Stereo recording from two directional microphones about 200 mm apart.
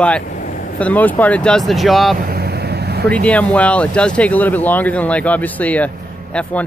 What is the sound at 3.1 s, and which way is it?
Speech, 5° left (ahead or behind).